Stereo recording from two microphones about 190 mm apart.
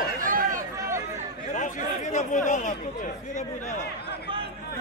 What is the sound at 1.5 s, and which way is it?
Chatter, 40° left (ahead or behind).